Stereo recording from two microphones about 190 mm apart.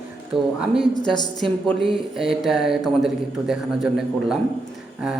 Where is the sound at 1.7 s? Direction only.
Centre (ahead or behind).